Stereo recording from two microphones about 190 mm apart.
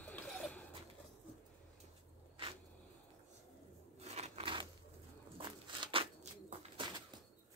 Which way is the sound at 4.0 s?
35° right (ahead or behind).